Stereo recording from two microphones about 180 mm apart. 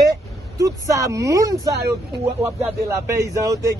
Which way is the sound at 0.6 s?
20° right (ahead or behind).